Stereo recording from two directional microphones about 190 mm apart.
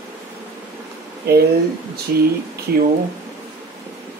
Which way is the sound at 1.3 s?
55° right (ahead or behind).